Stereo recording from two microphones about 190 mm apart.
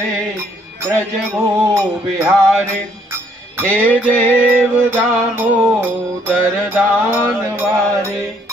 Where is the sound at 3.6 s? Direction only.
10° left (ahead or behind).